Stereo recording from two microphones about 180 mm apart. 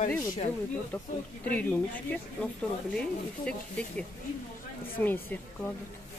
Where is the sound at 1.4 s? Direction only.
10° left (ahead or behind).